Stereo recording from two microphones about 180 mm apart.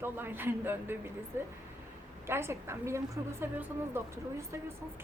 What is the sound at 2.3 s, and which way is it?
A woman's voice, 15° right (ahead or behind).